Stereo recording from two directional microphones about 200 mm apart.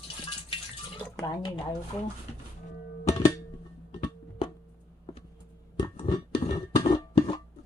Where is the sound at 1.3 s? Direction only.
20° left (ahead or behind).